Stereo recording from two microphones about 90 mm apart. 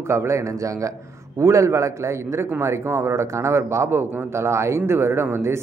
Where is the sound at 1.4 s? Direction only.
35° right (ahead or behind).